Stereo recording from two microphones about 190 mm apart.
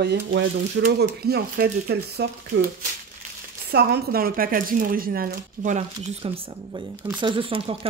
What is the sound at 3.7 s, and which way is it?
Speech, 55° right (ahead or behind).